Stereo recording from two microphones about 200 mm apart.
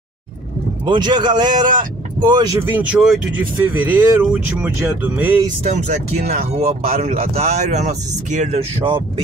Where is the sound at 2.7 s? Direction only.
5° right (ahead or behind).